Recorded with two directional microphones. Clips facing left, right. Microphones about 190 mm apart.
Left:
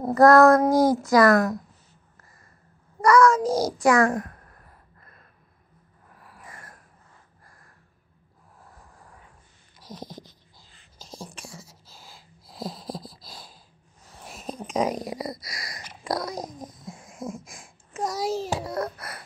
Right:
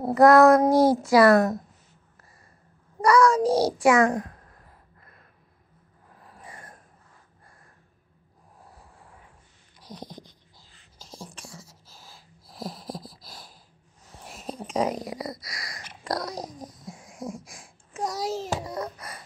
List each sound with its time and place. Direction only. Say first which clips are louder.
0.0 s a woman's voice: even; 20° right (ahead or behind)
3.0 s grunt: left 1 dB; 10° right (ahead or behind)
3.3 s a woman's voice: right 2 dB; 30° right (ahead or behind)
3.9 s speech: left 2 dB; 20° right (ahead or behind)
6.1 s a sound: right 1 dB; 25° right (ahead or behind)
7.4 s gasp: right 1 dB; 25° right (ahead or behind)
8.5 s a sound: even; 10° right (ahead or behind)
10.6 s whispering: left 2 dB; 15° left (ahead or behind)
12.9 s a sound: left 1 dB; 10° right (ahead or behind)
14.2 s a sound: left 1 dB; 15° left (ahead or behind)
14.8 s speech: left 1 dB; 15° left (ahead or behind)
16.0 s speech: left 1 dB; 5° left (ahead or behind)
17.9 s a child's voice: left 1 dB; centre (ahead or behind)
18.7 s speech: left 3 dB; 15° right (ahead or behind)